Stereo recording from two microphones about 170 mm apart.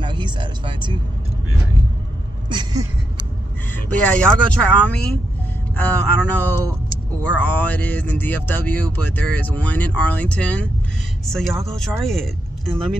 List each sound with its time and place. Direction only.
0.0 s speech: 25° right (ahead or behind)
2.5 s a sound: 25° right (ahead or behind)
3.7 s speech: 10° left (ahead or behind)
7.2 s speech: 10° left (ahead or behind)